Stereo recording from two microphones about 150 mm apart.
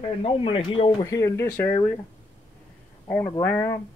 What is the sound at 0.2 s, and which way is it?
Speech, 35° left (ahead or behind).